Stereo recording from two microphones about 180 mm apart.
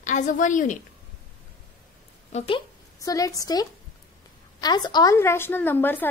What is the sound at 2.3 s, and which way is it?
Speech, 35° left (ahead or behind).